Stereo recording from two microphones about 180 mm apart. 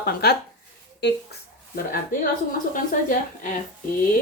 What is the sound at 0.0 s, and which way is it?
Speech, 60° left (ahead or behind).